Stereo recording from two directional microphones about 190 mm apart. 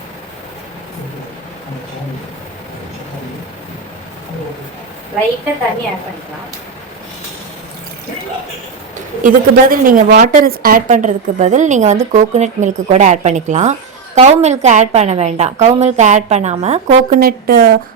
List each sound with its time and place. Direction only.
9.2 s a woman's voice: 45° right (ahead or behind)